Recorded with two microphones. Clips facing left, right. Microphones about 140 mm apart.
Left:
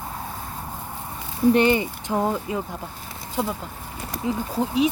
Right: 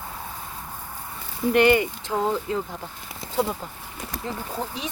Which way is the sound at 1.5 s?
25° left (ahead or behind).